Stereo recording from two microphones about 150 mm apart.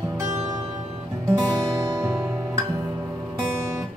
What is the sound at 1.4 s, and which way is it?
Music, 25° right (ahead or behind).